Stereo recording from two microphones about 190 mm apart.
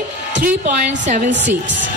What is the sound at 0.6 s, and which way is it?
Speech, 40° right (ahead or behind).